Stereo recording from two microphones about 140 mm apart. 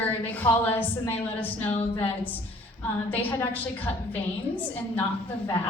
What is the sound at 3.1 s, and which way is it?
Speech, 15° left (ahead or behind).